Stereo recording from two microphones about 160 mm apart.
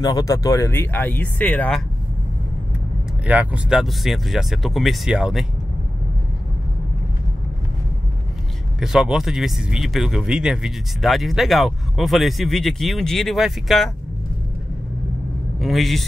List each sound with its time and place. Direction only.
0.0 s speech: 20° left (ahead or behind)
3.3 s speech: 10° right (ahead or behind)
8.7 s speech: 5° right (ahead or behind)
15.6 s speech: centre (ahead or behind)